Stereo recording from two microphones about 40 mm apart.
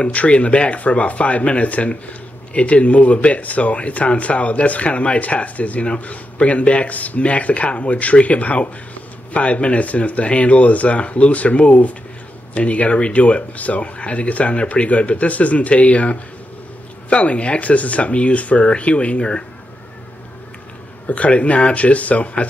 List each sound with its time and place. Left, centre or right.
0.1 s speech: left
21.1 s speech: left